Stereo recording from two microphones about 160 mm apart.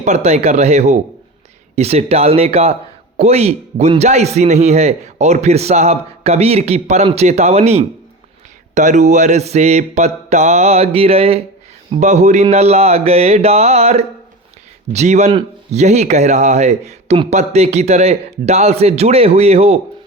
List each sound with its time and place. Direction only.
0.0 s a man's voice: 45° right (ahead or behind)
1.7 s a sound: 40° right (ahead or behind)
3.2 s a man's voice: 40° right (ahead or behind)
11.9 s a sound: 45° right (ahead or behind)
14.9 s a man's voice: 45° right (ahead or behind)
15.3 s speech: 30° right (ahead or behind)
15.8 s a man's voice: 45° right (ahead or behind)